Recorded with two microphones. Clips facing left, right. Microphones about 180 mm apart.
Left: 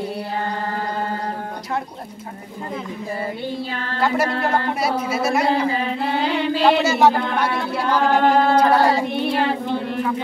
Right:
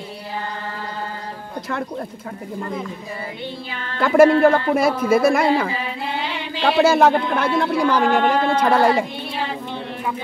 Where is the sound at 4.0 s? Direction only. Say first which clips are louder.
Right 9 dB; 50° right (ahead or behind).